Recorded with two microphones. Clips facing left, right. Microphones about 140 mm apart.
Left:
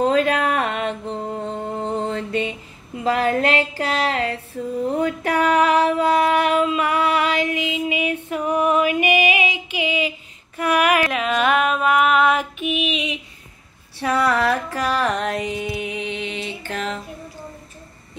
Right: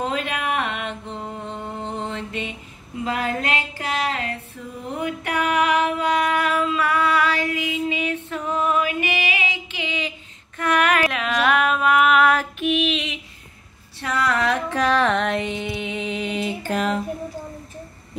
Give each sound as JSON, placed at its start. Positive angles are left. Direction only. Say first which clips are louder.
{"t": 0.0, "sound": "music", "louder": "left 7 dB", "side_deg": 40}
{"t": 3.0, "sound": "a sound", "louder": "left 6 dB", "side_deg": 35}
{"t": 12.5, "sound": "music", "louder": "right 2 dB", "side_deg": 0}
{"t": 14.2, "sound": "a sound", "louder": "even", "side_deg": 5}
{"t": 15.3, "sound": "music", "louder": "even", "side_deg": 0}
{"t": 16.3, "sound": "music", "louder": "right 4 dB", "side_deg": -45}